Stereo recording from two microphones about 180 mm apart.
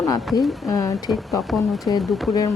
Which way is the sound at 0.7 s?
20° left (ahead or behind).